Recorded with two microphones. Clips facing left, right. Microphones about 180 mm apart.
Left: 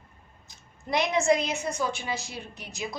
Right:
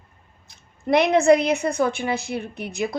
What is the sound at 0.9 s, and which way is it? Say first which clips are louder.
A woman's voice: right 8 dB; 60° right (ahead or behind).